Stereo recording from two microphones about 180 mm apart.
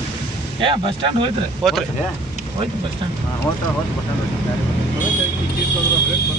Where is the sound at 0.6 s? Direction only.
30° right (ahead or behind).